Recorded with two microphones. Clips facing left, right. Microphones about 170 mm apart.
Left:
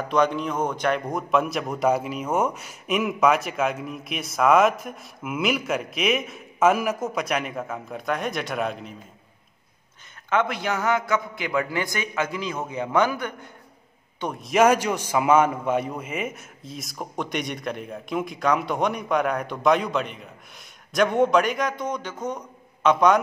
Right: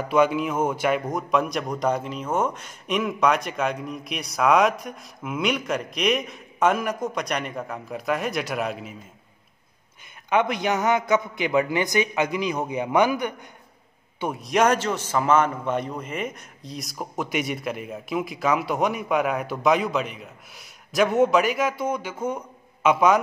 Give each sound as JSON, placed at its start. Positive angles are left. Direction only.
{"t": 0.1, "sound": "a man's voice", "side_deg": -5}
{"t": 10.3, "sound": "a man's voice", "side_deg": -15}
{"t": 14.2, "sound": "a man's voice", "side_deg": 0}